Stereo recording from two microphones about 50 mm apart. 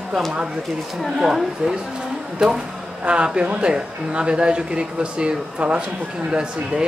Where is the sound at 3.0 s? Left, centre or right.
Right.